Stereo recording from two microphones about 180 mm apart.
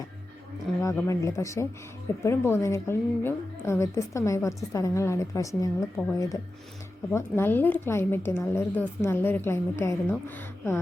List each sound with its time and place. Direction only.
0.8 s a woman's voice: 15° left (ahead or behind)